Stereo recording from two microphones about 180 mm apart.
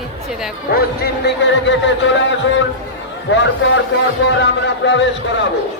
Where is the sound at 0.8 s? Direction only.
65° left (ahead or behind).